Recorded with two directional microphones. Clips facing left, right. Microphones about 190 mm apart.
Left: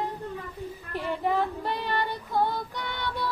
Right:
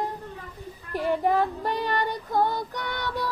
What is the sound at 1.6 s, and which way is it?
Child singing, 45° right (ahead or behind).